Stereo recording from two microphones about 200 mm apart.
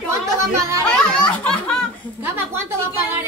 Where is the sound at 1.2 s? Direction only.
5° left (ahead or behind).